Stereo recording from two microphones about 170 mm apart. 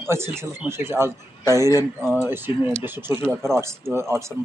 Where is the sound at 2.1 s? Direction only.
10° right (ahead or behind).